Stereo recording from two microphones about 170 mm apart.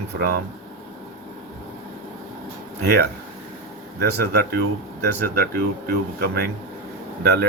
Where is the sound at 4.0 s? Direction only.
70° right (ahead or behind).